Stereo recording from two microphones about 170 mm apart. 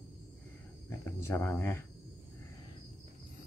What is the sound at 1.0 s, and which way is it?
Speech, 15° left (ahead or behind).